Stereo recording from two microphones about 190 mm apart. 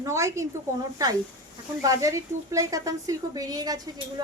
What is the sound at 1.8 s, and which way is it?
Speech, 15° right (ahead or behind).